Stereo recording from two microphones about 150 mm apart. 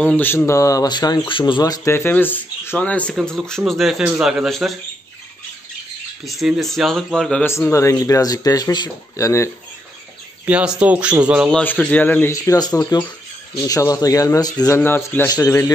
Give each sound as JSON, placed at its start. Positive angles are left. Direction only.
{"t": 0.0, "sound": "speech", "side_deg": 10}
{"t": 6.2, "sound": "speech", "side_deg": 0}
{"t": 7.4, "sound": "speech", "side_deg": 15}
{"t": 10.4, "sound": "a man's voice", "side_deg": -10}
{"t": 11.5, "sound": "speech", "side_deg": 10}